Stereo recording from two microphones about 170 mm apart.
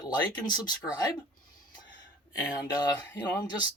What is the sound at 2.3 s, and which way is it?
Speech, 20° left (ahead or behind).